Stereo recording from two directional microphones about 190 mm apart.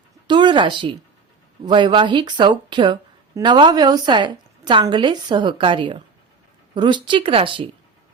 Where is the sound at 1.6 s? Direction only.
25° right (ahead or behind).